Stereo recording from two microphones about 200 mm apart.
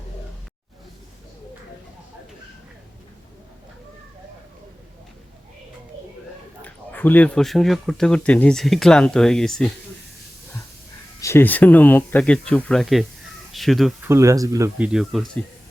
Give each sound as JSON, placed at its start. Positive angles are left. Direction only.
{"t": 6.6, "sound": "speech", "side_deg": 10}
{"t": 11.2, "sound": "speech", "side_deg": 15}
{"t": 14.1, "sound": "speech", "side_deg": -15}
{"t": 14.9, "sound": "speech", "side_deg": 0}